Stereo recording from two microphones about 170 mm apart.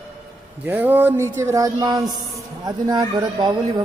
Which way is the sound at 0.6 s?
10° right (ahead or behind).